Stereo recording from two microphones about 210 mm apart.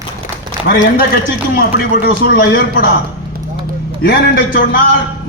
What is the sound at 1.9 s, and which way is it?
Speech, 45° left (ahead or behind).